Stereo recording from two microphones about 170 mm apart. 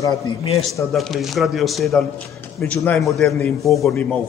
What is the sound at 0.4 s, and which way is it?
Speech, 30° left (ahead or behind).